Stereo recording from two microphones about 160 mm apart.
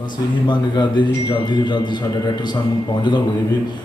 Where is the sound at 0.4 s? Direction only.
30° left (ahead or behind).